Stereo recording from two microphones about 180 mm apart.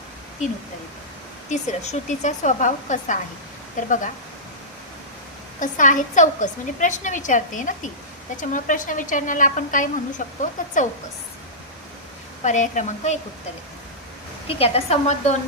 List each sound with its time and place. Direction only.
1.5 s a woman's voice: 40° left (ahead or behind)
5.5 s a woman's voice: 45° left (ahead or behind)
12.4 s speech: 40° left (ahead or behind)
14.4 s speech: 35° left (ahead or behind)